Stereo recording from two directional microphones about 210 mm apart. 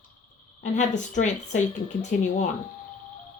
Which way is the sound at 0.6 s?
35° left (ahead or behind).